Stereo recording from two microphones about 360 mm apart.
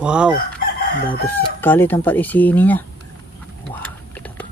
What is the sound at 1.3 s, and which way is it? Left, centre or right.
Speech, centre.